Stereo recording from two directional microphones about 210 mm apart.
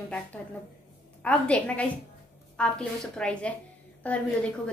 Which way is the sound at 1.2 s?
5° left (ahead or behind).